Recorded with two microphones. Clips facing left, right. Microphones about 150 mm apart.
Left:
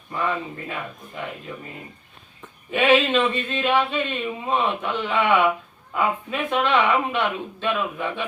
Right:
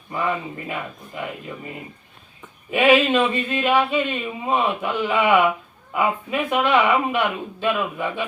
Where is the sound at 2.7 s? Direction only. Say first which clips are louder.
Right 2 dB; 10° right (ahead or behind).